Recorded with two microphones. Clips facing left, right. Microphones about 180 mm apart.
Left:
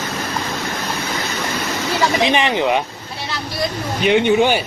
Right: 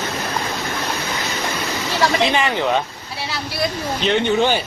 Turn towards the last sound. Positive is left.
turn(degrees=15)  # may be behind; listen again after turning